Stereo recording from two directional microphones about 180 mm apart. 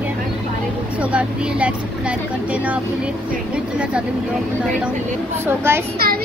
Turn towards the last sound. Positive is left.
turn(degrees=-60)  # may be behind; listen again after turning